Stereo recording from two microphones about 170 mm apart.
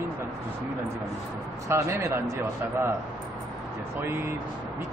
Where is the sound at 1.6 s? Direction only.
15° right (ahead or behind).